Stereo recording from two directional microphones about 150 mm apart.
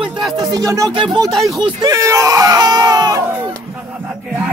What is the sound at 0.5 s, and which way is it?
Speech, 20° right (ahead or behind).